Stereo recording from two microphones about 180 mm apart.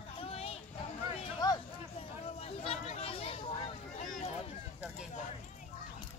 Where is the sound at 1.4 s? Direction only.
20° left (ahead or behind).